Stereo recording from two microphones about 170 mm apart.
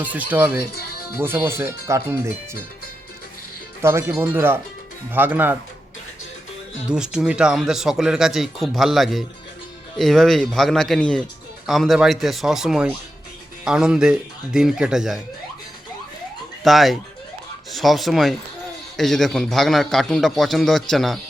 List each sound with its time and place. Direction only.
0.0 s speech: 10° right (ahead or behind)
3.8 s speech: 15° right (ahead or behind)
6.8 s speech: 5° right (ahead or behind)
16.6 s speech: centre (ahead or behind)